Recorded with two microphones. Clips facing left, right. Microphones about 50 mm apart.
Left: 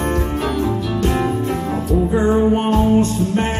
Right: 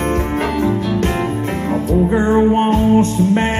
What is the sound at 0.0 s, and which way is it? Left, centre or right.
Music, right.